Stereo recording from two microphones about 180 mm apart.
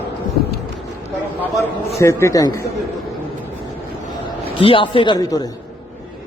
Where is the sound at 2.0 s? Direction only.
15° left (ahead or behind).